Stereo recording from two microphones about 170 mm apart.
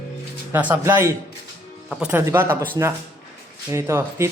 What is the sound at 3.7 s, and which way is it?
Speech, 15° right (ahead or behind).